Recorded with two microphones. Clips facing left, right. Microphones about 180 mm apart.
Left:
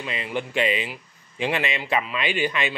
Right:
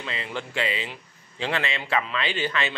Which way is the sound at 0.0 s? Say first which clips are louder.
Left 4 dB; 15° left (ahead or behind).